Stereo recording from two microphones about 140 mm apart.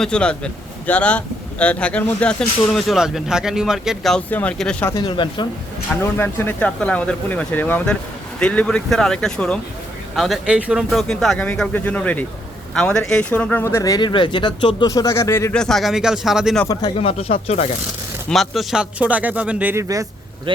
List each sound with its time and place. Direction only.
0.0 s a man's voice: 5° left (ahead or behind)
4.3 s speech: 10° left (ahead or behind)
5.0 s speech: 35° left (ahead or behind)
6.0 s a man's voice: 15° left (ahead or behind)
15.5 s a man's voice: 5° left (ahead or behind)
17.0 s speech: 45° left (ahead or behind)
18.3 s speech: centre (ahead or behind); by 20.1 s 20° right (ahead or behind)